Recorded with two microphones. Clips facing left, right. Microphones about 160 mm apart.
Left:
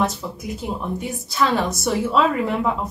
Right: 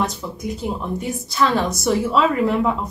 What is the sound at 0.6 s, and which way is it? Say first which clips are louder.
A woman's voice: right 1 dB; centre (ahead or behind).